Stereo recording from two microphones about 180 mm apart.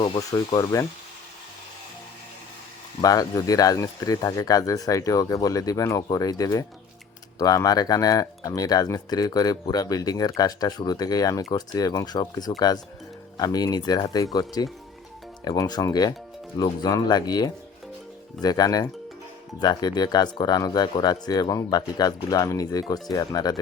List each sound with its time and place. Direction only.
0.0 s speech: 20° left (ahead or behind)
3.0 s speech: 20° left (ahead or behind)